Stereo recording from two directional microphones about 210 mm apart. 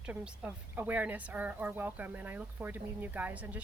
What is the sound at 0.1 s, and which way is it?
A woman's voice, 10° right (ahead or behind).